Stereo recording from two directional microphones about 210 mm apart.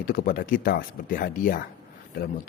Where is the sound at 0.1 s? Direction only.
40° left (ahead or behind).